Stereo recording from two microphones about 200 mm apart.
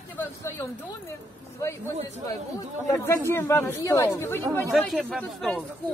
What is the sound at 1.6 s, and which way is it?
Speech, 15° left (ahead or behind).